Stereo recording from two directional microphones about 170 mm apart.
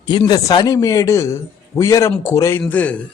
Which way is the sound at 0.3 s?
25° left (ahead or behind).